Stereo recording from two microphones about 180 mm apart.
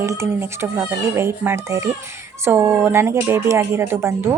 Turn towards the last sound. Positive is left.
turn(degrees=-15)  # may be behind; listen again after turning